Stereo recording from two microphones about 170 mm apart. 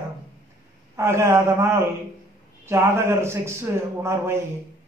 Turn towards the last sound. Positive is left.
turn(degrees=-15)  # may be behind; listen again after turning